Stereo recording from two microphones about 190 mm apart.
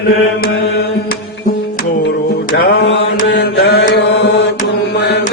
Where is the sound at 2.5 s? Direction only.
65° left (ahead or behind).